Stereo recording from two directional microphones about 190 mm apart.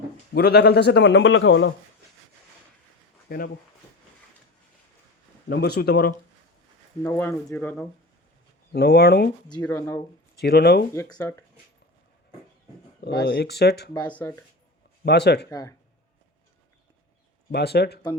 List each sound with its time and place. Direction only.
0.3 s a man's voice: 60° left (ahead or behind); by 1.7 s 80° left
3.2 s speech: 50° left (ahead or behind)
5.5 s a man's voice: 60° left (ahead or behind)
7.0 s speech: 15° left (ahead or behind)
8.7 s a man's voice: 60° left (ahead or behind)
9.5 s speech: 20° left (ahead or behind)
10.3 s a man's voice: 60° left (ahead or behind)
10.9 s speech: 15° left (ahead or behind)
13.2 s a man's voice: 60° left (ahead or behind)
13.9 s speech: 20° left (ahead or behind)
15.0 s a man's voice: 60° left (ahead or behind)
15.4 s speech: 20° left (ahead or behind)
17.5 s a man's voice: 60° left (ahead or behind)